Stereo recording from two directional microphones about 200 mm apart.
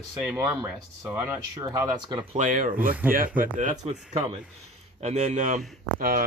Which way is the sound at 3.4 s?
40° right (ahead or behind).